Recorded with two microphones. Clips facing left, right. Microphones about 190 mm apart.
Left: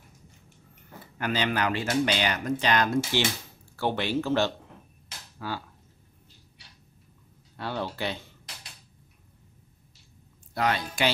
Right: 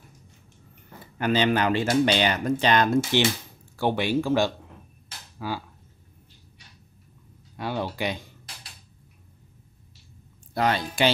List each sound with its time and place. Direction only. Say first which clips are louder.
1.1 s speech: right 6 dB; 25° right (ahead or behind)
3.7 s speech: right 3 dB; 15° right (ahead or behind)
7.5 s speech: right 3 dB; 15° right (ahead or behind)
10.5 s a woman's voice: right 3 dB; 30° right (ahead or behind)